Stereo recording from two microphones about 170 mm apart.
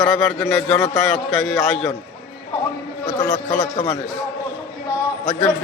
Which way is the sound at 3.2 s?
5° left (ahead or behind).